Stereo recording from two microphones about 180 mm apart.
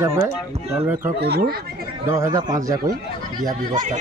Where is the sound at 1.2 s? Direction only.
60° right (ahead or behind).